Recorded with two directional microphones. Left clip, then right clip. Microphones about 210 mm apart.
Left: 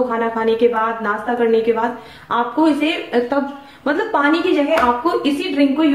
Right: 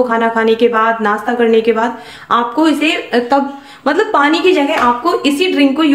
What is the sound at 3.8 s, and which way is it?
Speech, 45° right (ahead or behind).